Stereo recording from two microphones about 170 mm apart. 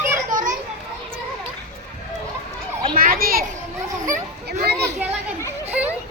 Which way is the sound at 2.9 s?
60° right (ahead or behind).